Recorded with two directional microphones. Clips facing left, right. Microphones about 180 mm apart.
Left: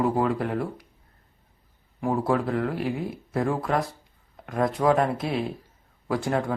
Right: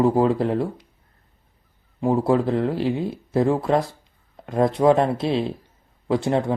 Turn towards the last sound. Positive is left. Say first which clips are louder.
# right 5 dB
turn(degrees=-25)  # may be behind; listen again after turning